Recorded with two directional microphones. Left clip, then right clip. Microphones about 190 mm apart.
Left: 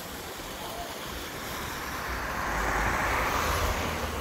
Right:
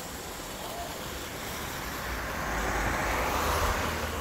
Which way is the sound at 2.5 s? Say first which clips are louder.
Left 2 dB; 55° right (ahead or behind).